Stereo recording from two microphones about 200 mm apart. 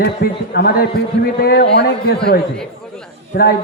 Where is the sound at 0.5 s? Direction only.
50° left (ahead or behind).